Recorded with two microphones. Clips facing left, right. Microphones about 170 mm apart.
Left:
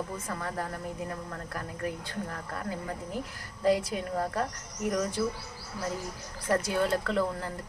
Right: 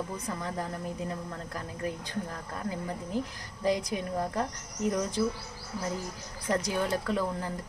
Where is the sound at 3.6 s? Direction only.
15° right (ahead or behind).